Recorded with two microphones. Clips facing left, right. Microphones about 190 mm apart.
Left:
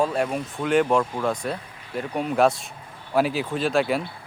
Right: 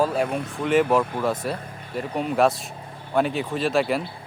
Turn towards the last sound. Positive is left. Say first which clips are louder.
# even
turn(degrees=0)  # may be behind; listen again after turning